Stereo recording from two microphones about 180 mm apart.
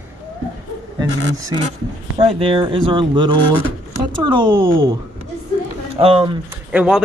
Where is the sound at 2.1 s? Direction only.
30° right (ahead or behind).